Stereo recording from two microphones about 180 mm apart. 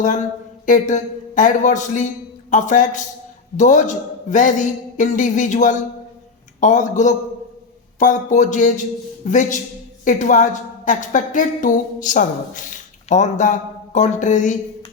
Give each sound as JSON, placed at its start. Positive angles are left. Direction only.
{"t": 0.0, "sound": "a woman's voice", "side_deg": 45}